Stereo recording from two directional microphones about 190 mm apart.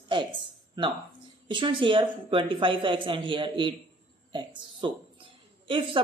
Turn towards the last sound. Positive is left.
turn(degrees=-25)  # may be behind; listen again after turning